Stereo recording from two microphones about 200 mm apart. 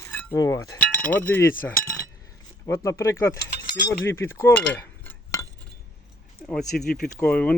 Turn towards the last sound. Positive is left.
turn(degrees=5)  # may be behind; listen again after turning